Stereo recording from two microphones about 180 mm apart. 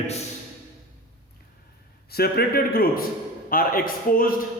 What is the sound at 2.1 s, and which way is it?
A man's voice, 60° left (ahead or behind).